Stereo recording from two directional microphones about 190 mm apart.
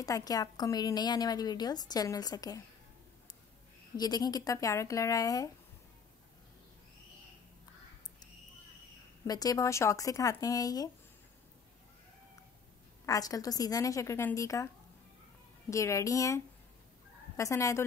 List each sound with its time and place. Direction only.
0.0 s a woman's voice: 20° left (ahead or behind)
3.9 s a woman's voice: 20° left (ahead or behind)
9.3 s a woman's voice: 20° left (ahead or behind)
13.0 s a woman's voice: 20° left (ahead or behind)
15.7 s a woman's voice: 15° left (ahead or behind)